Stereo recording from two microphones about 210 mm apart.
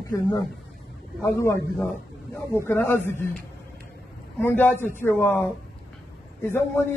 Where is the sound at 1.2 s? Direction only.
15° left (ahead or behind).